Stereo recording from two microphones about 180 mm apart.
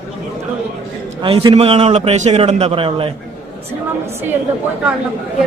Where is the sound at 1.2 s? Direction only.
30° right (ahead or behind).